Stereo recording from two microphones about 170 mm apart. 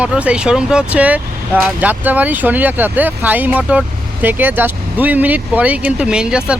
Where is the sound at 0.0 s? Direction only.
5° right (ahead or behind).